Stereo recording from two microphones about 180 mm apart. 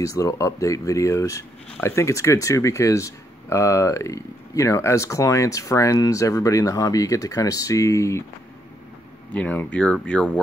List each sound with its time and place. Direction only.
0.0 s speech: 20° left (ahead or behind)
9.3 s speech: 10° left (ahead or behind)